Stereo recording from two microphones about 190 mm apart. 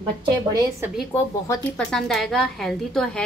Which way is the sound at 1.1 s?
5° left (ahead or behind).